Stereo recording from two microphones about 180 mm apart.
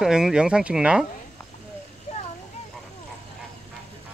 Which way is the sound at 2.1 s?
40° left (ahead or behind).